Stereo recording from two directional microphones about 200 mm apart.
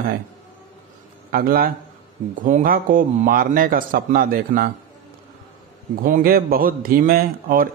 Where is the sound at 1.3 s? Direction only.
45° right (ahead or behind).